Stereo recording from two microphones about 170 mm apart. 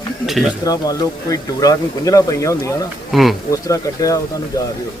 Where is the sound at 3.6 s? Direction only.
20° left (ahead or behind).